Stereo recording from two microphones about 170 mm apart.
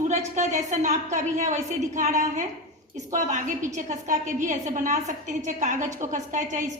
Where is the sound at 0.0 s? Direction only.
45° right (ahead or behind).